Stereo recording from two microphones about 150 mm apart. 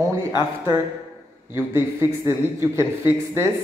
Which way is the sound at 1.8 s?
15° right (ahead or behind).